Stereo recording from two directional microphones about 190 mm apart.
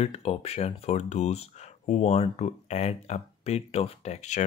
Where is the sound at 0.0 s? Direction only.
35° left (ahead or behind).